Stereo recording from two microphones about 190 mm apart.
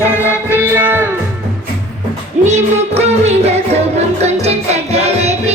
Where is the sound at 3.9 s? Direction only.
35° right (ahead or behind).